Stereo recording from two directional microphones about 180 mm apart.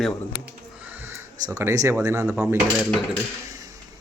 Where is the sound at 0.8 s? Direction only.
10° right (ahead or behind).